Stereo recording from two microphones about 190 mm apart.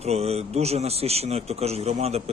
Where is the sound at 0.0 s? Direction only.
35° right (ahead or behind).